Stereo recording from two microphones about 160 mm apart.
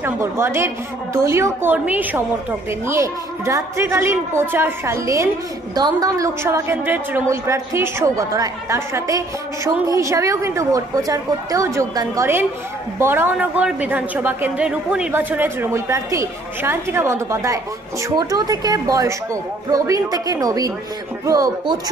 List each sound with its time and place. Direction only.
0.0 s a woman's voice: 15° right (ahead or behind)